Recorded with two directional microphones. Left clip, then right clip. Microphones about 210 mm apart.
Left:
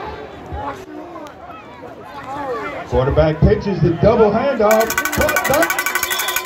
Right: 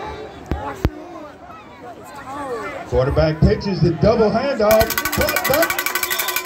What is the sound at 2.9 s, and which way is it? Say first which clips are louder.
A man's voice: left 2 dB; 50° right (ahead or behind).